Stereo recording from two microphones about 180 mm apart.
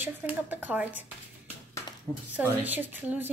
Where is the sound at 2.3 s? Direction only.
10° right (ahead or behind).